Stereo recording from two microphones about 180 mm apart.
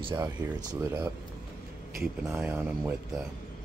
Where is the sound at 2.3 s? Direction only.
5° right (ahead or behind).